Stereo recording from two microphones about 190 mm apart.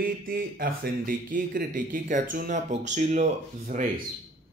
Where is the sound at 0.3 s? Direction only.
50° right (ahead or behind).